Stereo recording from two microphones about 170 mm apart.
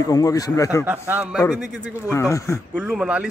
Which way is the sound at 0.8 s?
10° right (ahead or behind).